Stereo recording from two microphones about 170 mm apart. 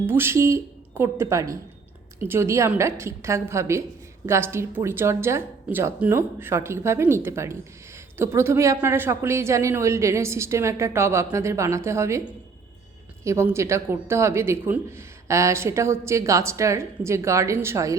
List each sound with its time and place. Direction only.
0.0 s a woman's voice: 15° right (ahead or behind)